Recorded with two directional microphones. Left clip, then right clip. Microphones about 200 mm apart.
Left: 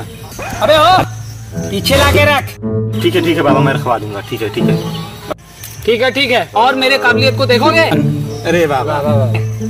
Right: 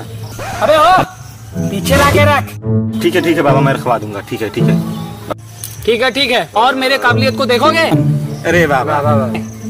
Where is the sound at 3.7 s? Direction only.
25° right (ahead or behind).